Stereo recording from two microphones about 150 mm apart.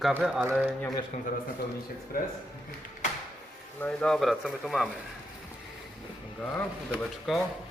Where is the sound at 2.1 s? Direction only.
75° left (ahead or behind).